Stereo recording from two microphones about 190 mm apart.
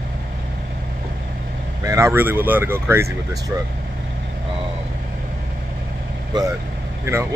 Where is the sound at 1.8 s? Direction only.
15° right (ahead or behind).